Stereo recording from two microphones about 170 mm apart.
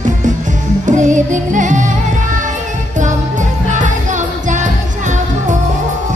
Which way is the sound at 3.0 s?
45° right (ahead or behind).